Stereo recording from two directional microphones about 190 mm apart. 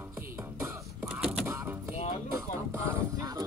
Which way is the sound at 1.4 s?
15° right (ahead or behind).